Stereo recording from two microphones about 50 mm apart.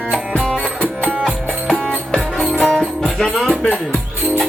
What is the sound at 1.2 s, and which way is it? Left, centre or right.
Music, centre.